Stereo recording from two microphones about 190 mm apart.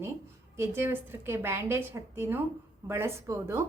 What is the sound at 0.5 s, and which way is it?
A woman's voice, 10° right (ahead or behind).